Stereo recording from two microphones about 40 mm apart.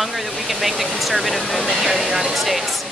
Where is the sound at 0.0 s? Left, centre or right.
Centre.